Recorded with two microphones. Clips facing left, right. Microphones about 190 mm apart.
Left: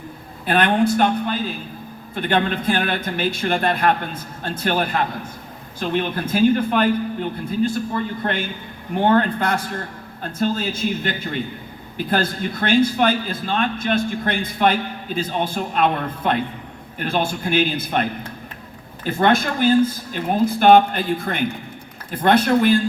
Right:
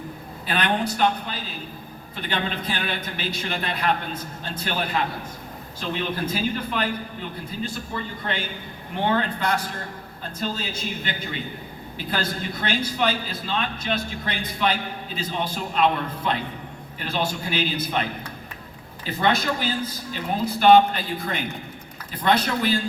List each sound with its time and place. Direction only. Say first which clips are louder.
0.4 s a man's voice: left 7 dB; 50° left (ahead or behind)